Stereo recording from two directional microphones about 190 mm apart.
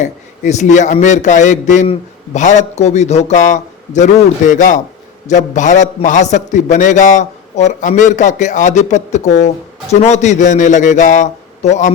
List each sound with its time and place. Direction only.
0.0 s a man's voice: 40° left (ahead or behind)